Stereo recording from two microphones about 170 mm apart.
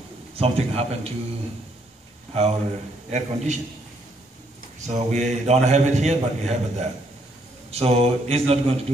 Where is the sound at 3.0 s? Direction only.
45° right (ahead or behind).